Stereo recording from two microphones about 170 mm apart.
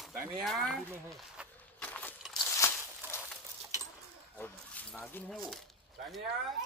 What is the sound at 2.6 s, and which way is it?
Walk, 15° left (ahead or behind).